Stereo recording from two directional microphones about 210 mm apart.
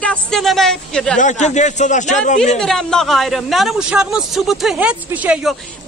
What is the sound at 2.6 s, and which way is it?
Speech, centre (ahead or behind).